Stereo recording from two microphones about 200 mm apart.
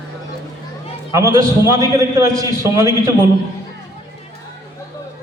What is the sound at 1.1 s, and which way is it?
A man's voice, 15° right (ahead or behind).